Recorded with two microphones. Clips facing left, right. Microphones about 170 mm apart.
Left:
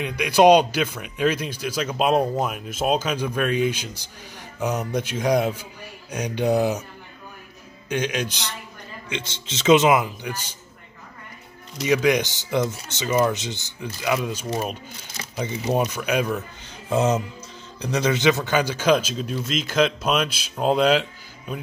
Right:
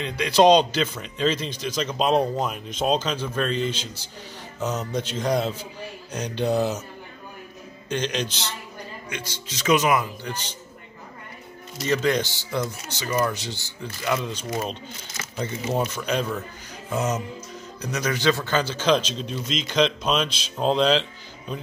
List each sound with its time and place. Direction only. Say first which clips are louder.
0.0 s a man's voice: left 1 dB; 10° left (ahead or behind)
7.9 s a man's voice: left 1 dB; 10° left (ahead or behind)
9.1 s a man's voice: left 6 dB; 25° left (ahead or behind)
10.2 s a man's voice: left 1 dB; 10° left (ahead or behind)
11.8 s a man's voice: left 3 dB; 15° left (ahead or behind)
14.0 s a man's voice: left 2 dB; 5° left (ahead or behind)
15.7 s a man's voice: left 3 dB; 15° left (ahead or behind)
16.9 s a man's voice: left 5 dB; 30° left (ahead or behind); by 21.5 s 10° left (ahead or behind)